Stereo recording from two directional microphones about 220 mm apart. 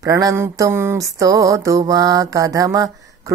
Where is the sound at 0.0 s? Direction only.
15° right (ahead or behind).